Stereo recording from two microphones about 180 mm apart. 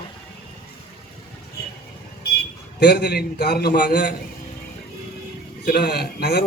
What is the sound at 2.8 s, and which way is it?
A man's voice, 65° left (ahead or behind).